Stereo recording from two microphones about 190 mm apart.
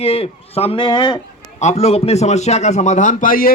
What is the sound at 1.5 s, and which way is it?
A man's voice, 35° left (ahead or behind).